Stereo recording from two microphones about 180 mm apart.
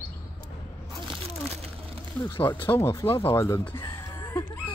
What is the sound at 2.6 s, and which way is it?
Speech, 15° left (ahead or behind).